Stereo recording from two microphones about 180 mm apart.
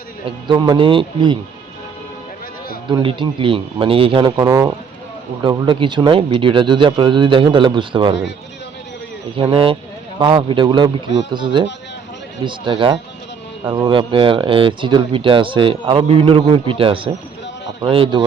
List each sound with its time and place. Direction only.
0.3 s speech: 25° right (ahead or behind)
2.9 s speech: 30° right (ahead or behind)
9.3 s speech: 30° right (ahead or behind)